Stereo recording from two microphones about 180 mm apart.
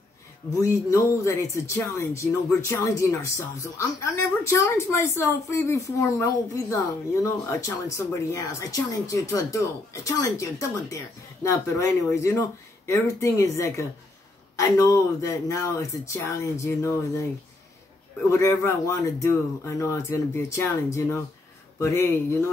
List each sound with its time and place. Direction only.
0.8 s speech: 15° left (ahead or behind)
18.3 s speech: 15° left (ahead or behind)